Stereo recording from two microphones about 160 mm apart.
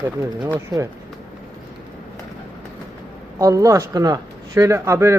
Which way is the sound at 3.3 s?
20° right (ahead or behind).